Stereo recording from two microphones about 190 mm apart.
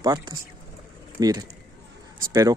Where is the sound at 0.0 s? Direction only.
20° right (ahead or behind).